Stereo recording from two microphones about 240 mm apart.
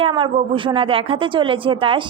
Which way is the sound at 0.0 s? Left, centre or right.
Right.